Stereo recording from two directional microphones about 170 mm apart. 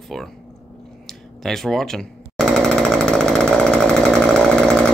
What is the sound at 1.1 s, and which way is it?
Jackhammer, centre (ahead or behind).